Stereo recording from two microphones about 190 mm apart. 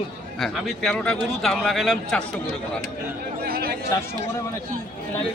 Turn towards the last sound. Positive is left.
turn(degrees=-50)  # may be behind; listen again after turning